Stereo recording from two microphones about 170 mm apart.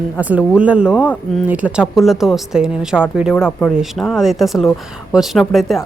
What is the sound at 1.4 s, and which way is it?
Speech, 10° right (ahead or behind).